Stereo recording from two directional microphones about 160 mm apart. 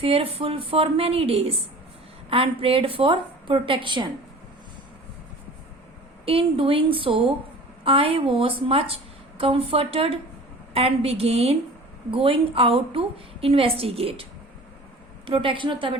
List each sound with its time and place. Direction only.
0.0 s a woman's voice: 35° right (ahead or behind)
6.2 s a woman's voice: 35° right (ahead or behind)
15.3 s a woman's voice: 30° right (ahead or behind)